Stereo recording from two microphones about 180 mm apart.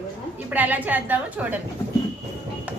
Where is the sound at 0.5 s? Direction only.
10° right (ahead or behind).